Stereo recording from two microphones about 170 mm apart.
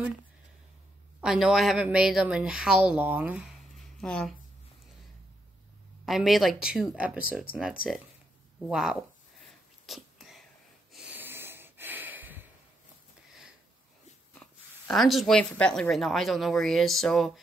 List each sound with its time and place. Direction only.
1.2 s a woman's voice: 5° right (ahead or behind)
6.0 s a woman's voice: centre (ahead or behind)
9.8 s sneeze: centre (ahead or behind)
10.9 s snort: 5° right (ahead or behind)
14.4 s a woman's voice: centre (ahead or behind)